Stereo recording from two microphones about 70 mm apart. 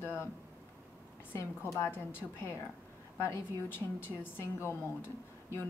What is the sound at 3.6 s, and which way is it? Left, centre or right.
Speech, left.